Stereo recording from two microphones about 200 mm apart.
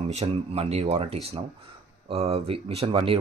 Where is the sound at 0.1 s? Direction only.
30° right (ahead or behind).